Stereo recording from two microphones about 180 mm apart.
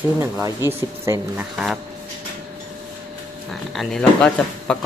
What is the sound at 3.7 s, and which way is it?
Speech, 5° left (ahead or behind).